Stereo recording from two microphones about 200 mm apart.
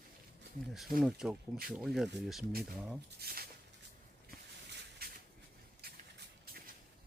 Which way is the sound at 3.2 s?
50° right (ahead or behind).